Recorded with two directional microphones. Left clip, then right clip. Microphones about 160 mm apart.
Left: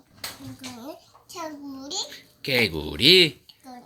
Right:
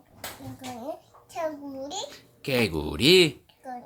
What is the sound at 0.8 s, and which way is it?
Babbling, 20° right (ahead or behind).